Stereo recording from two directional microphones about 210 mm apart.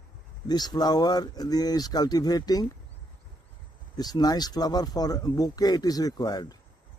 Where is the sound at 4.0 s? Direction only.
20° left (ahead or behind).